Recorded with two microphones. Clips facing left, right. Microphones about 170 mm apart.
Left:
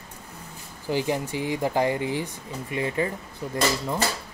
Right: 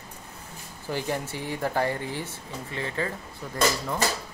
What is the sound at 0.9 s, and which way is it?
Speech, 15° left (ahead or behind).